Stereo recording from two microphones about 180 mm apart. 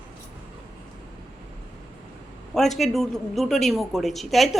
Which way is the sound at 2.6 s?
Centre (ahead or behind).